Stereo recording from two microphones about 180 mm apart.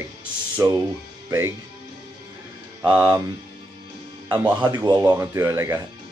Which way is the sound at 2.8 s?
20° right (ahead or behind).